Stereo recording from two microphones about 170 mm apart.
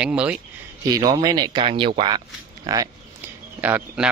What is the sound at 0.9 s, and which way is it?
Speech, 20° right (ahead or behind).